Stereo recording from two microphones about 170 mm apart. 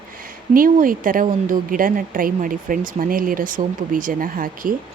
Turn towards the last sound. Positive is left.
turn(degrees=-55)  # may be behind; listen again after turning